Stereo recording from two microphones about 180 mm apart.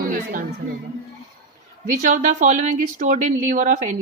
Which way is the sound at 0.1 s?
55° right (ahead or behind).